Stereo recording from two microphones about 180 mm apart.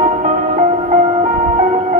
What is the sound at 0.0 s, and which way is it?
Music, 45° right (ahead or behind).